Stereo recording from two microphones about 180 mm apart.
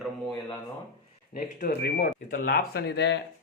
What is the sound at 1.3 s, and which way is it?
A man's voice, 60° left (ahead or behind).